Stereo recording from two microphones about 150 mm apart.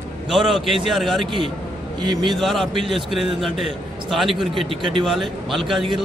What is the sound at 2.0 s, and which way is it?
Speech, 30° right (ahead or behind).